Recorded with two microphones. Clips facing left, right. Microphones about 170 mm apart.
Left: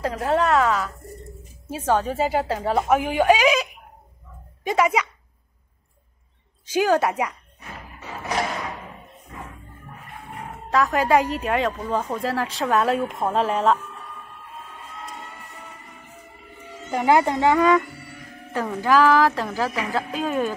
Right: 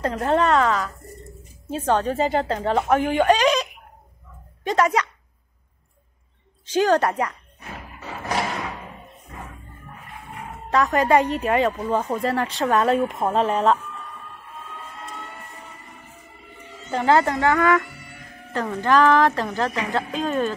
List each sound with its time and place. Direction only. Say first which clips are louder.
0.0 s a woman's voice: right 1 dB; 5° left (ahead or behind)
4.6 s a woman's voice: even; 10° left (ahead or behind)
6.6 s a woman's voice: right 1 dB; 10° left (ahead or behind)
10.7 s speech: right 1 dB; centre (ahead or behind)
16.9 s a woman's voice: even; 10° left (ahead or behind)